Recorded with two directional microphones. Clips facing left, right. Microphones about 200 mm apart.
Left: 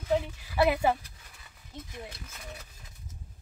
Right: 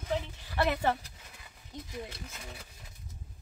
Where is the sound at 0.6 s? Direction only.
10° left (ahead or behind).